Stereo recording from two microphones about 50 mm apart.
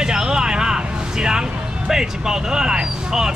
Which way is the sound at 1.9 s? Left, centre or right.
Centre.